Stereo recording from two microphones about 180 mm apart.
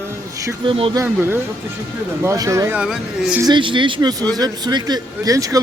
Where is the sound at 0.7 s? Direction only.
30° right (ahead or behind).